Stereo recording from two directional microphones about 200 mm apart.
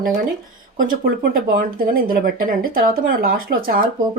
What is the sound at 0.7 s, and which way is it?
Speech, 45° right (ahead or behind).